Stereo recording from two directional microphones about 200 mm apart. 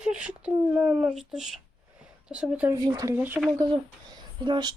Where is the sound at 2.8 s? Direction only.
20° right (ahead or behind).